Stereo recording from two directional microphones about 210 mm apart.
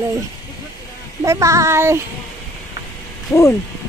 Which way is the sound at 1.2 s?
15° right (ahead or behind).